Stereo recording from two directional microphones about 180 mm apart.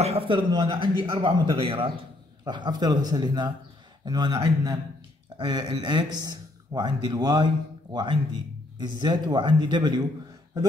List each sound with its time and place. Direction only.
0.0 s a man's voice: 30° right (ahead or behind)